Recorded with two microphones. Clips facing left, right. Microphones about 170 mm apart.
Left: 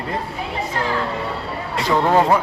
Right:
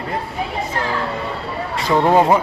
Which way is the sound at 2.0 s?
15° right (ahead or behind).